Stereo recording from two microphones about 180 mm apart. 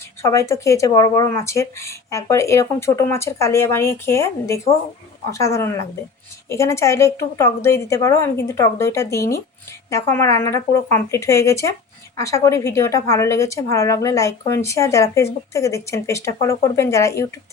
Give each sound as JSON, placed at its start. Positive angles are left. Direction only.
{"t": 0.2, "sound": "a woman's voice", "side_deg": 15}